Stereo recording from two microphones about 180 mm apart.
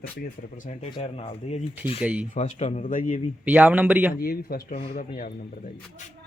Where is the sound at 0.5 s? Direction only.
40° left (ahead or behind).